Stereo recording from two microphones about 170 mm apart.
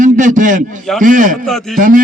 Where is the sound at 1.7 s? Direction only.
50° right (ahead or behind).